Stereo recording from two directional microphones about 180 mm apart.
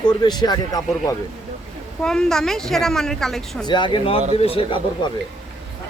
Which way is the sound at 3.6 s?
25° left (ahead or behind).